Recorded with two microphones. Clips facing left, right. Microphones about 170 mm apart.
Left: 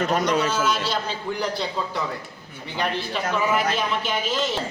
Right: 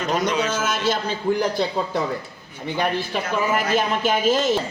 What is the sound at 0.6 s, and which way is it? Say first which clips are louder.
A man's voice: right 1 dB; 50° right (ahead or behind).